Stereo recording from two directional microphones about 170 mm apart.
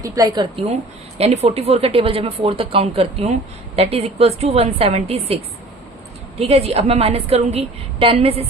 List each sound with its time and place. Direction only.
0.0 s a woman's voice: 20° right (ahead or behind)
1.2 s speech: 40° right (ahead or behind)
6.4 s speech: 35° right (ahead or behind)